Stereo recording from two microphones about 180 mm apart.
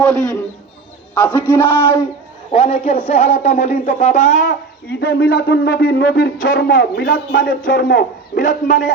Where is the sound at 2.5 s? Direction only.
30° left (ahead or behind).